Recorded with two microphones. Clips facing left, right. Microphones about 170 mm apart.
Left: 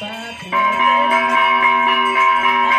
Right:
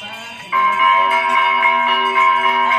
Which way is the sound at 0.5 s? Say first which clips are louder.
Right 1 dB; 40° left (ahead or behind).